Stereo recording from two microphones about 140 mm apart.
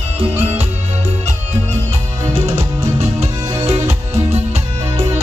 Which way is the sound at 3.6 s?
50° right (ahead or behind).